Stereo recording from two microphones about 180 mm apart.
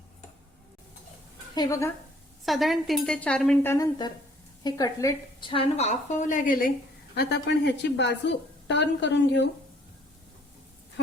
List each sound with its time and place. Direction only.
1.5 s speech: 20° left (ahead or behind)
2.4 s speech: centre (ahead or behind)
3.7 s a woman's voice: 20° left (ahead or behind); by 6.6 s 50° left (ahead or behind)
7.2 s a woman's voice: 70° left (ahead or behind)